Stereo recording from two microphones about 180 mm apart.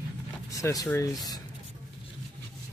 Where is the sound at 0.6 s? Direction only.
15° left (ahead or behind).